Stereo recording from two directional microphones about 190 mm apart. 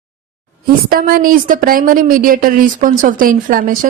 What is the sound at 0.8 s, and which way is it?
A woman's voice, 50° right (ahead or behind).